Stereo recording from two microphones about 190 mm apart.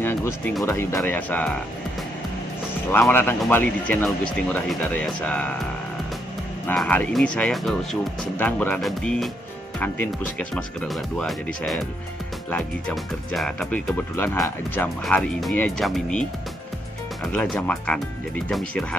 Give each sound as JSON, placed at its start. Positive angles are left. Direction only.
{"t": 0.7, "sound": "speech", "side_deg": 15}
{"t": 2.9, "sound": "speech", "side_deg": 10}
{"t": 6.6, "sound": "speech", "side_deg": 5}
{"t": 10.5, "sound": "speech", "side_deg": 0}